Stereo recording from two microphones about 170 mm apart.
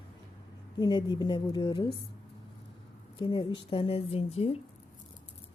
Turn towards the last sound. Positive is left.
turn(degrees=35)  # may be behind; listen again after turning